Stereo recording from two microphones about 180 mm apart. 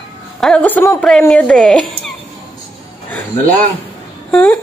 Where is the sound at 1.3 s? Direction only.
5° left (ahead or behind).